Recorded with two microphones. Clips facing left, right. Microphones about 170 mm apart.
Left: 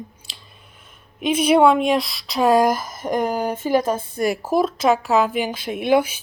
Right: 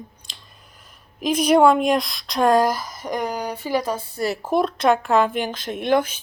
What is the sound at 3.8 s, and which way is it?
Speech, 20° left (ahead or behind).